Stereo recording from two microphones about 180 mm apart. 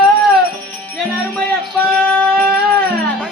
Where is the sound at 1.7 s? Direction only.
10° left (ahead or behind).